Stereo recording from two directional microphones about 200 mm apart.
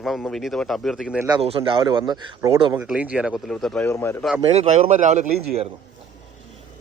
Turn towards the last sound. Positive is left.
turn(degrees=-35)  # may be behind; listen again after turning